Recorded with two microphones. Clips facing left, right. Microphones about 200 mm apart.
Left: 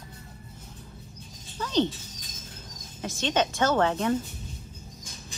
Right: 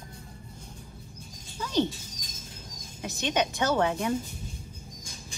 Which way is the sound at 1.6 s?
10° right (ahead or behind).